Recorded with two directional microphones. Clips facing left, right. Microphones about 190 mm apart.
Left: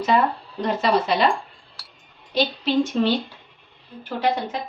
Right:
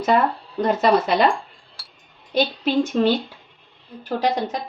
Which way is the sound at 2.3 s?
50° right (ahead or behind).